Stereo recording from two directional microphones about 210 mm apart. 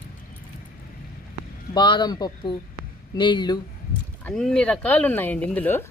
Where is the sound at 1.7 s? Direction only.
20° left (ahead or behind).